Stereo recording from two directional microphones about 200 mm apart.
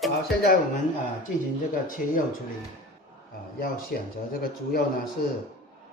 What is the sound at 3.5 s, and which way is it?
Speech, 50° left (ahead or behind).